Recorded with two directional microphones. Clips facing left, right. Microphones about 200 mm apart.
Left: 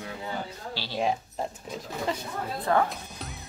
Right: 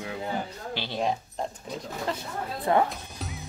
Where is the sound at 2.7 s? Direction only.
20° right (ahead or behind).